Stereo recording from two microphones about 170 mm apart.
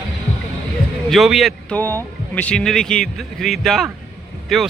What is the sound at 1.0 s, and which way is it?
A man's voice, centre (ahead or behind).